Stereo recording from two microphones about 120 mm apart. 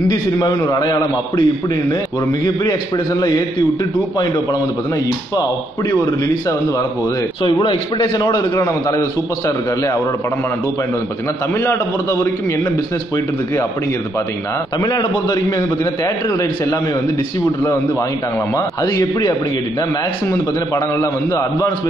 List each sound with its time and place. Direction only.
0.1 s a man's voice: 35° left (ahead or behind)
2.4 s a man's voice: 35° left (ahead or behind)
5.3 s a man's voice: 35° left (ahead or behind)
7.6 s a man's voice: 40° left (ahead or behind)
11.5 s a man's voice: 25° left (ahead or behind)
14.8 s a man's voice: 30° left (ahead or behind)
18.6 s a man's voice: 25° left (ahead or behind)